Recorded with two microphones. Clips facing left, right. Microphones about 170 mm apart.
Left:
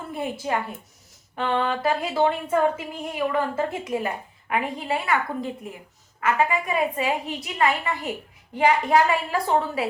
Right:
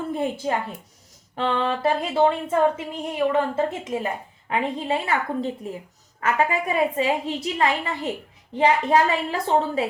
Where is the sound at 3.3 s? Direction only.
25° right (ahead or behind).